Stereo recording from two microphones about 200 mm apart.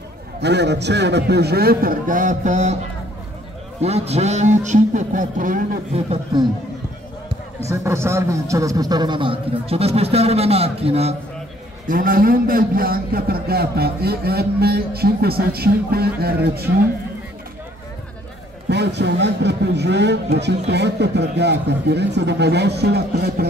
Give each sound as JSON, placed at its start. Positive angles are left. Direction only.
{"t": 0.4, "sound": "a man's voice", "side_deg": -60}
{"t": 3.8, "sound": "a man's voice", "side_deg": -30}
{"t": 7.6, "sound": "a man's voice", "side_deg": -15}
{"t": 11.9, "sound": "a man's voice", "side_deg": -45}
{"t": 18.7, "sound": "a man's voice", "side_deg": -60}